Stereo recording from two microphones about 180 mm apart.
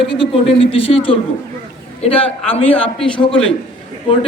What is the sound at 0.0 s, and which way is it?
Speech, 30° left (ahead or behind).